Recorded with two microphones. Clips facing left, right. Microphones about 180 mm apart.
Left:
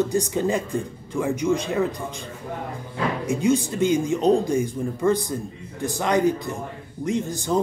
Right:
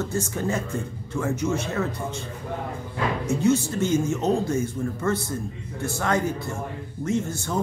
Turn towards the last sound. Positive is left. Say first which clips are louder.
# left 1 dB
turn(degrees=15)  # may be behind; listen again after turning